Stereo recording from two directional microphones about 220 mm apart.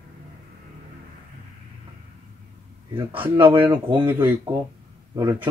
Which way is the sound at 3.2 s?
25° right (ahead or behind).